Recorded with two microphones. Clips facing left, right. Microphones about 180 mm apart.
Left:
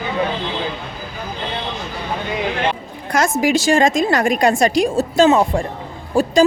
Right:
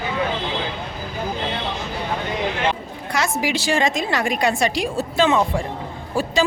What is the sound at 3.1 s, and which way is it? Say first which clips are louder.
A woman's voice: left 6 dB; 45° left (ahead or behind).